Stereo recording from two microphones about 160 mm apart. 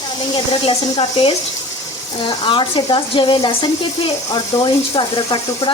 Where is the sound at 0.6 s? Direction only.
35° left (ahead or behind).